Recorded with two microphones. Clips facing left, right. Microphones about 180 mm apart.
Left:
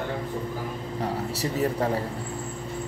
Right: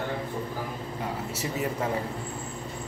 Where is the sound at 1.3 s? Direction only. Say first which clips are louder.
Left 4 dB; 35° left (ahead or behind).